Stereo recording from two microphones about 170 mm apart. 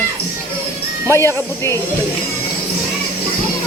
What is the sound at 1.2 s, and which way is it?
Speech, 15° left (ahead or behind).